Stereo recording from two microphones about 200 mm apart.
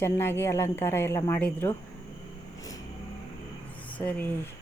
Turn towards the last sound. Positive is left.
turn(degrees=5)  # may be behind; listen again after turning